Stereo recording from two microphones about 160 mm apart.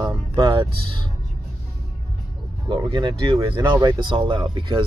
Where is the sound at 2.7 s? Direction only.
30° right (ahead or behind).